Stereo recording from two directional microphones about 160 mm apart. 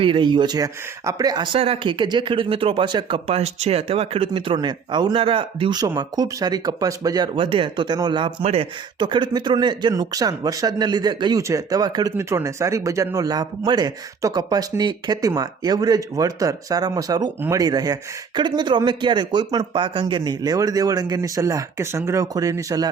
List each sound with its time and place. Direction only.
0.0 s speech: 30° right (ahead or behind)
1.5 s speech: 35° right (ahead or behind)